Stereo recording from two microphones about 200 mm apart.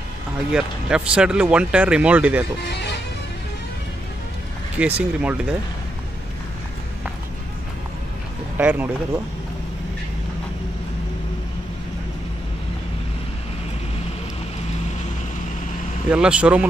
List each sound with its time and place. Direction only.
0.5 s speech: 5° right (ahead or behind)
2.6 s music: 55° left (ahead or behind)
4.7 s speech: 5° right (ahead or behind)
8.5 s speech: 10° right (ahead or behind)
16.1 s speech: 5° right (ahead or behind)